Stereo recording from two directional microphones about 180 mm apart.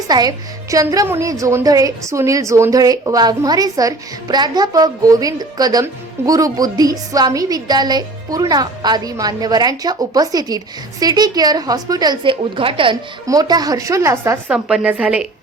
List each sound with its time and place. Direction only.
0.1 s a woman's voice: 20° right (ahead or behind)